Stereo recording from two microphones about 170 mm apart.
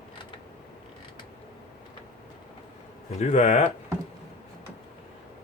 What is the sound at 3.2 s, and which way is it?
Speech, 40° left (ahead or behind).